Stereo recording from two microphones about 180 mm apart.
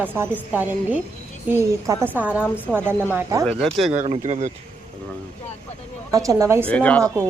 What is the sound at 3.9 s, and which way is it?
Speech, 40° right (ahead or behind).